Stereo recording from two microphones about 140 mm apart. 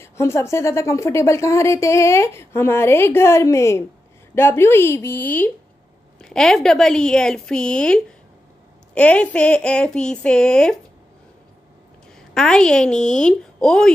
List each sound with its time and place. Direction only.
0.0 s a woman's voice: 20° left (ahead or behind)
12.2 s a woman's voice: 5° left (ahead or behind)